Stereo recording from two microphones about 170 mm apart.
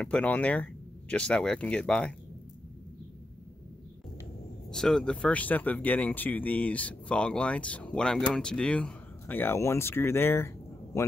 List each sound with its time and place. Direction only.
0.0 s speech: 5° left (ahead or behind)
4.6 s speech: 5° left (ahead or behind)